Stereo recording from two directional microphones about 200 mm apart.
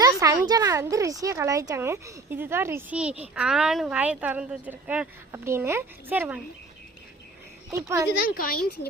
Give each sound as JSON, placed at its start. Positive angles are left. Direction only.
{"t": 0.0, "sound": "speech", "side_deg": -15}
{"t": 7.7, "sound": "speech", "side_deg": -15}
{"t": 8.4, "sound": "speech", "side_deg": 50}